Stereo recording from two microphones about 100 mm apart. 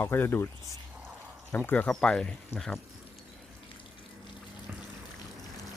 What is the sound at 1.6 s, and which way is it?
Speech, 15° left (ahead or behind).